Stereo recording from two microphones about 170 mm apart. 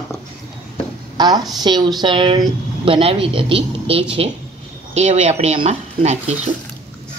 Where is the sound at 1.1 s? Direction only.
25° right (ahead or behind).